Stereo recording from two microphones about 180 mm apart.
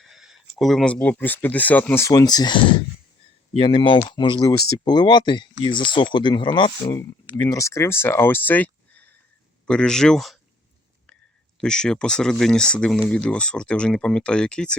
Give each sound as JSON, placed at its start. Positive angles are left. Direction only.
{"t": 0.0, "sound": "a sound", "side_deg": 0}
{"t": 0.6, "sound": "speech", "side_deg": 0}
{"t": 11.6, "sound": "speech", "side_deg": 5}